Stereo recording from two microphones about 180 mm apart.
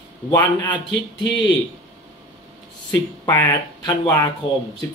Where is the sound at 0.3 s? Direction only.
20° left (ahead or behind).